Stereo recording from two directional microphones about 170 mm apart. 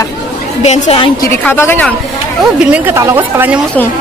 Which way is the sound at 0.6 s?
40° left (ahead or behind).